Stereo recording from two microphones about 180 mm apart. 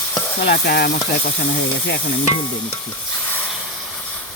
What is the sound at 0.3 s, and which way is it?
Stir, 55° left (ahead or behind).